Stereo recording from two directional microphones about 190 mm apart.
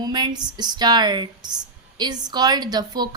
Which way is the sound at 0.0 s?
20° right (ahead or behind).